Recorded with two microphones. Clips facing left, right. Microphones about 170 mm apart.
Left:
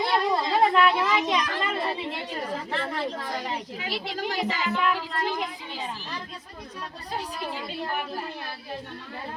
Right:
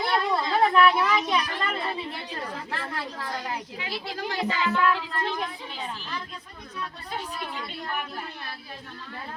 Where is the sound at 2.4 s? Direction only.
20° left (ahead or behind).